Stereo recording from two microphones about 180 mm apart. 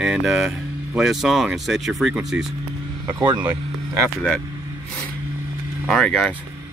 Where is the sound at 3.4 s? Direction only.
15° right (ahead or behind).